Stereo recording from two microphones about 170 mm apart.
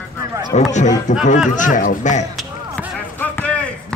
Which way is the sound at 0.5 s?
40° left (ahead or behind).